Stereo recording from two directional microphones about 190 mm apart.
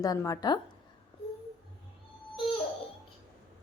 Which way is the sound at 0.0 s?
20° left (ahead or behind).